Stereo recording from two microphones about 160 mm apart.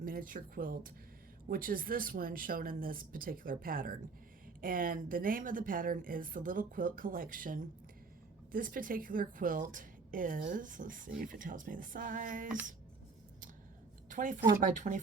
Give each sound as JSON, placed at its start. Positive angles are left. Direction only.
{"t": 0.0, "sound": "a woman's voice", "side_deg": -60}
{"t": 14.1, "sound": "a woman's voice", "side_deg": -55}